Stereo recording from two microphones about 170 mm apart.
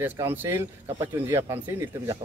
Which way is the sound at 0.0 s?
10° right (ahead or behind).